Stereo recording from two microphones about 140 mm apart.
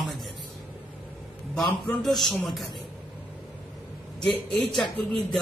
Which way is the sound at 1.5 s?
5° left (ahead or behind).